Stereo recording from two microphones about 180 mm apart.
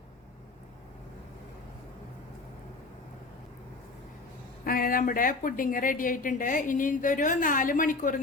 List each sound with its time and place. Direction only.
4.6 s a woman's voice: 55° left (ahead or behind)